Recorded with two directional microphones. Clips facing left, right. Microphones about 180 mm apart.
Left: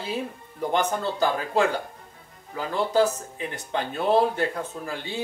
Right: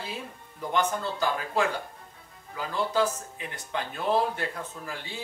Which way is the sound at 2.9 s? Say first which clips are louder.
Left 6 dB; 30° left (ahead or behind).